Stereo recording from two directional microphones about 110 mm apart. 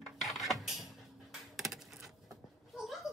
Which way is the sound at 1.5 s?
Centre (ahead or behind).